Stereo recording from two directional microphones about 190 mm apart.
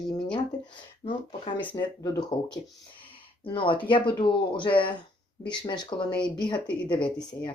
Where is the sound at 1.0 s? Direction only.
25° left (ahead or behind).